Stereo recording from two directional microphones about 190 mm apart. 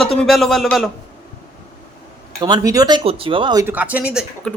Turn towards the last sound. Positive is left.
turn(degrees=5)  # may be behind; listen again after turning